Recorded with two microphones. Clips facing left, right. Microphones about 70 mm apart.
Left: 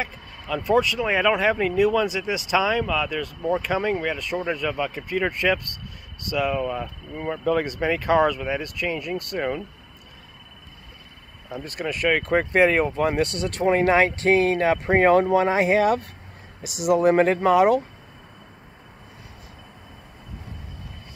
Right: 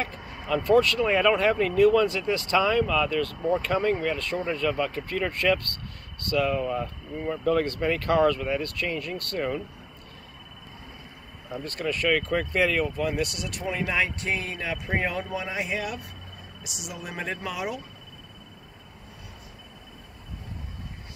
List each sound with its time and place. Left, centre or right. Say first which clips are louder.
0.7 s speech: even; centre
3.2 s speech: even; centre
6.6 s speech: left 1 dB; centre
11.5 s speech: left 1 dB; centre; by 13.8 s left
13.8 s speech: left 9 dB; left